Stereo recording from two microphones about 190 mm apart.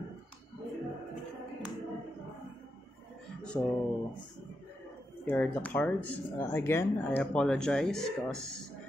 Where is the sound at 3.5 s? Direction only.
10° left (ahead or behind).